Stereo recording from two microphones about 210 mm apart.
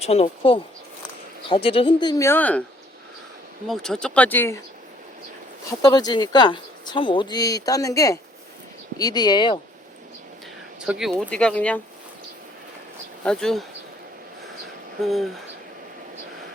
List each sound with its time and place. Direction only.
0.0 s speech: 30° left (ahead or behind); by 2.6 s 5° left (ahead or behind)
3.7 s speech: 5° left (ahead or behind)
5.8 s speech: 20° left (ahead or behind)
10.8 s speech: 5° right (ahead or behind)
13.2 s speech: 5° left (ahead or behind)
15.0 s speech: centre (ahead or behind)